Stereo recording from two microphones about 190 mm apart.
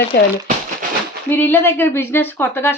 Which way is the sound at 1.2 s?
10° left (ahead or behind).